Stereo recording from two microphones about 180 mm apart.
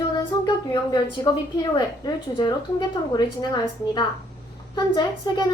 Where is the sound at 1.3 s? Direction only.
25° left (ahead or behind).